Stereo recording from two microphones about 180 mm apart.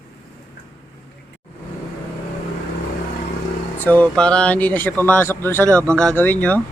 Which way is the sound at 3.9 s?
5° left (ahead or behind).